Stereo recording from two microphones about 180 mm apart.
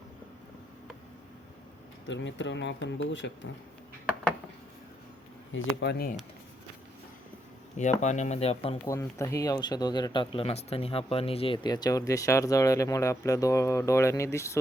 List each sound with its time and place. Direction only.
2.0 s speech: 90° left
5.5 s speech: 80° left
7.8 s speech: 40° left (ahead or behind)
8.9 s speech: 15° left (ahead or behind)